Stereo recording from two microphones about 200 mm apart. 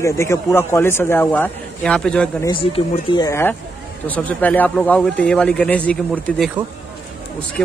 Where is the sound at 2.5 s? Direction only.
25° left (ahead or behind); by 6.5 s 5° left (ahead or behind).